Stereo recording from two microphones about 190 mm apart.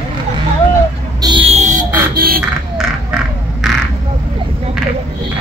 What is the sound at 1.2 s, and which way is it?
Music, 25° right (ahead or behind).